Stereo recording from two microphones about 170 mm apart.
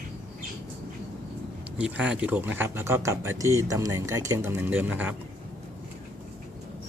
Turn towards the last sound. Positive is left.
turn(degrees=-10)  # may be behind; listen again after turning